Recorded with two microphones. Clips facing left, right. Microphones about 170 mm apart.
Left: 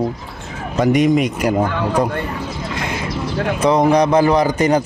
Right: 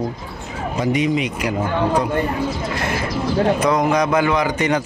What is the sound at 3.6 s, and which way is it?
A man's voice, 30° left (ahead or behind).